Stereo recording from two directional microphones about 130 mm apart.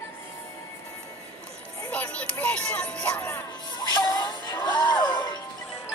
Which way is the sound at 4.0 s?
30° left (ahead or behind).